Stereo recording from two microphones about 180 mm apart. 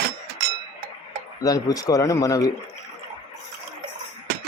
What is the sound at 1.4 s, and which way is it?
A man's voice, 20° left (ahead or behind).